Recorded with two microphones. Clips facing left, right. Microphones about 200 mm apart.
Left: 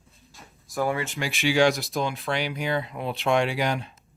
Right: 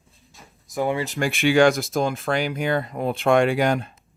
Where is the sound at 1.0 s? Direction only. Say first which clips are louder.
Right 5 dB; 40° right (ahead or behind).